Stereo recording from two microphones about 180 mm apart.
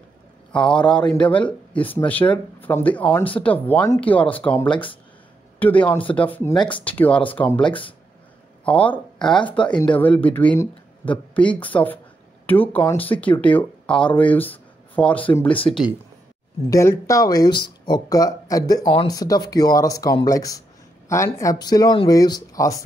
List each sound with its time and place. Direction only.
0.5 s a man's voice: 5° left (ahead or behind)
7.6 s speech: 30° left (ahead or behind)
8.6 s speech: 10° left (ahead or behind)